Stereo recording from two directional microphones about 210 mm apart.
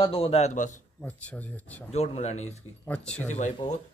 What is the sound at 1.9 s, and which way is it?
Speech, 30° left (ahead or behind).